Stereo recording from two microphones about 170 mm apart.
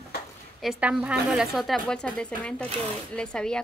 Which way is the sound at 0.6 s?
Centre (ahead or behind).